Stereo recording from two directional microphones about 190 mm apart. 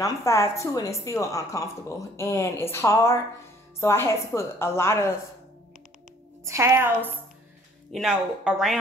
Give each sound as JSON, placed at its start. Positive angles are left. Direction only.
{"t": 0.0, "sound": "a woman's voice", "side_deg": 15}
{"t": 6.4, "sound": "a woman's voice", "side_deg": -15}